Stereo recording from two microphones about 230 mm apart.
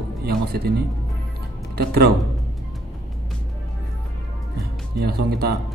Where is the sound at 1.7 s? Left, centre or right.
Right.